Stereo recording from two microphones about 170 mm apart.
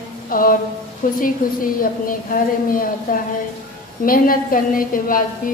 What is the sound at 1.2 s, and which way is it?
A woman's voice, 55° left (ahead or behind).